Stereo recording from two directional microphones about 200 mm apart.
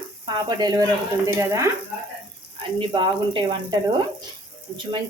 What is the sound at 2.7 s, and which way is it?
Speech, 20° right (ahead or behind).